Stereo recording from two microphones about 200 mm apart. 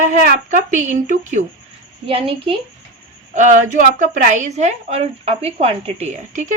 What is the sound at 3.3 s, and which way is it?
A woman's voice, 40° right (ahead or behind).